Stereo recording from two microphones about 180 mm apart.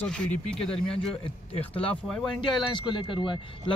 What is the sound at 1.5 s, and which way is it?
Speech, 30° left (ahead or behind).